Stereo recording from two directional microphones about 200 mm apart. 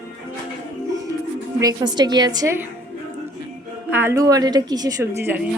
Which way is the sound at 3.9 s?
10° right (ahead or behind).